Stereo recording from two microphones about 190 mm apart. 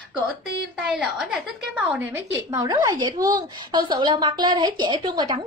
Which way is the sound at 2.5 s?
20° right (ahead or behind).